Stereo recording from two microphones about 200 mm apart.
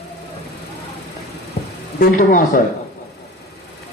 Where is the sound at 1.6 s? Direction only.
30° left (ahead or behind).